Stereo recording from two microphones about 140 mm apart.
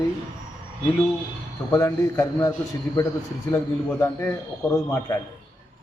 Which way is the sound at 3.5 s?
15° left (ahead or behind).